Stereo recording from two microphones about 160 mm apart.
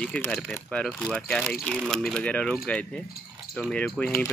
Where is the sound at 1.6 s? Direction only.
5° left (ahead or behind).